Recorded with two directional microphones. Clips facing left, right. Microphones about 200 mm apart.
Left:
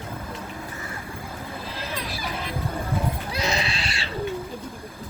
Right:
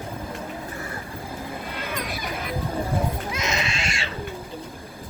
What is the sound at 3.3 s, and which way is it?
Pig, 35° left (ahead or behind).